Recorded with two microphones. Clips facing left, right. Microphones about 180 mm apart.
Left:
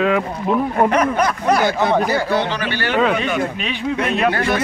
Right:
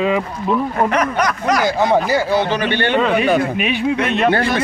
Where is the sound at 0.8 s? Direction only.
30° left (ahead or behind).